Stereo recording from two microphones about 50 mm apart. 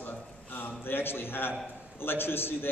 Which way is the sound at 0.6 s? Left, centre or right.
Left.